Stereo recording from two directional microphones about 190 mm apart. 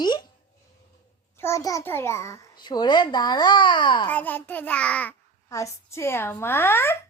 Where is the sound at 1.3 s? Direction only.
15° left (ahead or behind).